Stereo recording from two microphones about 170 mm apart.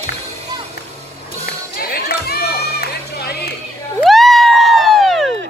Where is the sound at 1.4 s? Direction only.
65° left (ahead or behind).